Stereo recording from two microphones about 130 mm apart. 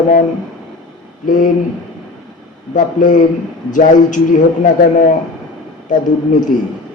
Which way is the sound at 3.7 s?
75° left (ahead or behind).